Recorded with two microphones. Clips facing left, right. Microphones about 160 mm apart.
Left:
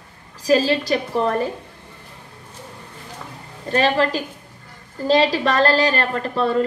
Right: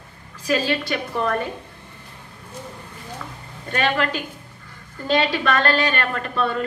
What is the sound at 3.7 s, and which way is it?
A woman's voice, 30° left (ahead or behind).